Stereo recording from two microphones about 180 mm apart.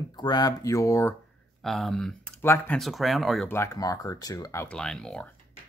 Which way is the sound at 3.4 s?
15° left (ahead or behind).